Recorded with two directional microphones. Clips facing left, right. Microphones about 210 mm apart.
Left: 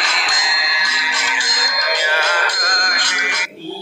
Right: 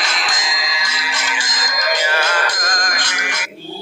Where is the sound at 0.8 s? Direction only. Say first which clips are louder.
Right 1 dB; 45° right (ahead or behind).